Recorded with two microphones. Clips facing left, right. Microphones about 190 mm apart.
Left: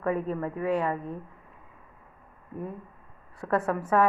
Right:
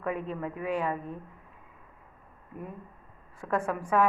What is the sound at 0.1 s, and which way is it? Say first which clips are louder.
Speech: left 4 dB; 35° left (ahead or behind).